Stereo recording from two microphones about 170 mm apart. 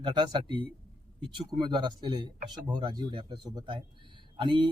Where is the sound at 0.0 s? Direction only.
25° right (ahead or behind).